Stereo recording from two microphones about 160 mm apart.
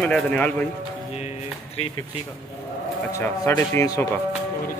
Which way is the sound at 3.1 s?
15° left (ahead or behind).